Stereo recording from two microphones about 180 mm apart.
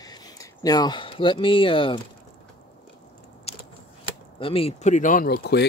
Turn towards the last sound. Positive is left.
turn(degrees=60)  # may be behind; listen again after turning